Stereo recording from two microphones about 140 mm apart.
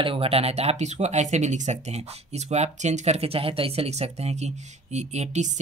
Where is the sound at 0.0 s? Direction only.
40° right (ahead or behind).